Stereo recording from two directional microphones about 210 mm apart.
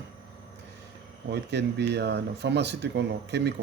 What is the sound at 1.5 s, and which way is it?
Speech, 55° right (ahead or behind).